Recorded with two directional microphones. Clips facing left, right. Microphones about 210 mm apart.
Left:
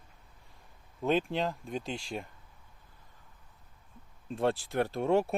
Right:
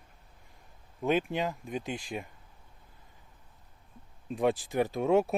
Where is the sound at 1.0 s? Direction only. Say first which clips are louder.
Right 1 dB; 15° right (ahead or behind).